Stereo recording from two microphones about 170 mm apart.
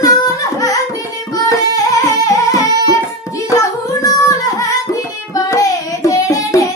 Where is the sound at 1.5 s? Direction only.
20° left (ahead or behind).